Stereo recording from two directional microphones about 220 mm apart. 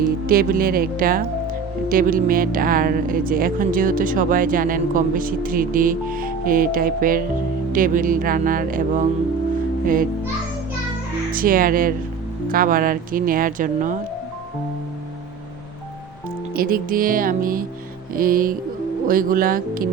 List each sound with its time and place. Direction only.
0.3 s a child's voice: 40° right (ahead or behind)
11.3 s speech: 40° right (ahead or behind)
16.6 s speech: 40° right (ahead or behind)